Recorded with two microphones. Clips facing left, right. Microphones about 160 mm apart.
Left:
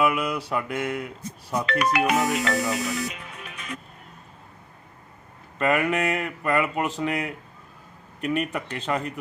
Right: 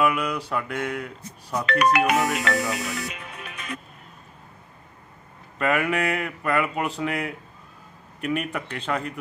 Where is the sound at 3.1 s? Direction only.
70° right (ahead or behind).